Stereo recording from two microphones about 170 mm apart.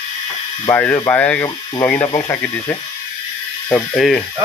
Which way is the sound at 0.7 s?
15° left (ahead or behind).